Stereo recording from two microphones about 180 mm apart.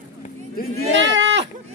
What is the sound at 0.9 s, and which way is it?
Speech, 90° right.